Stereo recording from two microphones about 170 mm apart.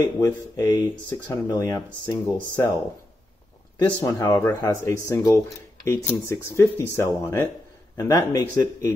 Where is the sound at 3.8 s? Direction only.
25° left (ahead or behind).